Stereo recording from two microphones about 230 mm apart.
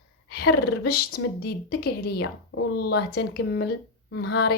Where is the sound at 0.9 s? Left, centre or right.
Left.